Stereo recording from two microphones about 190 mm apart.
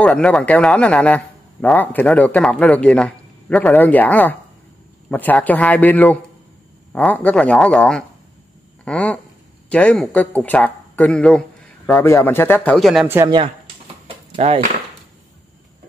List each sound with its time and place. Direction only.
0.0 s a man's voice: 5° left (ahead or behind)
13.0 s speech: 10° right (ahead or behind)
14.0 s a sound: 30° right (ahead or behind)